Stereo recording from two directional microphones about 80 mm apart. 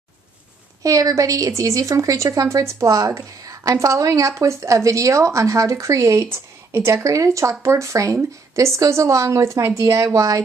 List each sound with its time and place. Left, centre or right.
0.8 s a woman's voice: right